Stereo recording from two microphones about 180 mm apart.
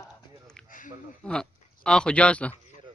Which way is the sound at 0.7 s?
45° left (ahead or behind).